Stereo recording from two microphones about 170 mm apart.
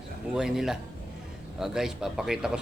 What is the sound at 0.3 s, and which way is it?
Speech, 5° right (ahead or behind).